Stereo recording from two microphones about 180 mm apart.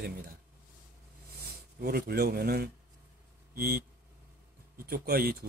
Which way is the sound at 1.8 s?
60° right (ahead or behind).